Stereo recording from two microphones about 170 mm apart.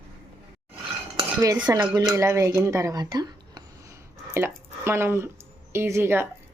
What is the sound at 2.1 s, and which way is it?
Speech, 15° right (ahead or behind).